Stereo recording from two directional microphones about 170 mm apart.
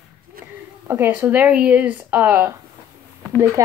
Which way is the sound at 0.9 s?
10° right (ahead or behind).